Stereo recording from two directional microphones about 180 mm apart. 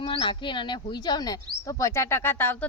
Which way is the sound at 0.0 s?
30° left (ahead or behind).